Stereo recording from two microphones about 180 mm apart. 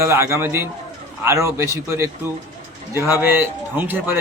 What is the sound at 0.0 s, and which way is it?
A man's voice, 15° right (ahead or behind).